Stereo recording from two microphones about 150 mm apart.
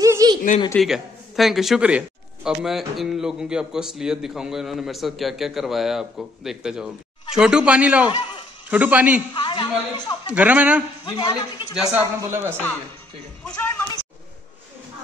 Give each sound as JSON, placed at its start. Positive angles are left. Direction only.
{"t": 0.0, "sound": "a sound", "side_deg": -25}
{"t": 0.7, "sound": "a man's voice", "side_deg": 0}
{"t": 8.1, "sound": "a man's voice", "side_deg": 30}
{"t": 8.6, "sound": "a man's voice", "side_deg": -10}
{"t": 9.3, "sound": "a woman's voice", "side_deg": 30}
{"t": 10.3, "sound": "a man's voice", "side_deg": -10}
{"t": 11.1, "sound": "a man's voice", "side_deg": 30}
{"t": 12.2, "sound": "a man's voice", "side_deg": -15}
{"t": 13.4, "sound": "speech", "side_deg": 10}